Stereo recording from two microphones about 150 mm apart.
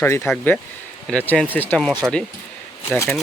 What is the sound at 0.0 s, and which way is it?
Speech, 15° left (ahead or behind).